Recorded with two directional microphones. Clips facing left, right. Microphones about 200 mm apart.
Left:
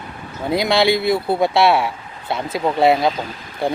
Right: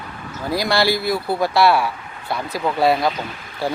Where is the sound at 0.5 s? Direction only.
20° left (ahead or behind).